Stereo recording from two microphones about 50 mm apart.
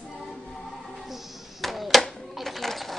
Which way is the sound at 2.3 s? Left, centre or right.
Centre.